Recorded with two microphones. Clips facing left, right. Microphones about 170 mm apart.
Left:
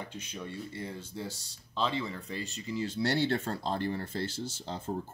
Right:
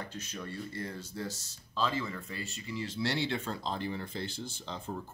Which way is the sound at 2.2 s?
35° left (ahead or behind).